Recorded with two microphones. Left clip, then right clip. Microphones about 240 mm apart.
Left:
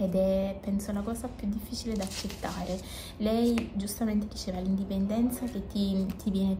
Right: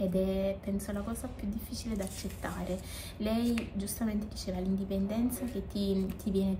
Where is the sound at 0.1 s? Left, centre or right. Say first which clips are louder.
Left 4 dB; centre.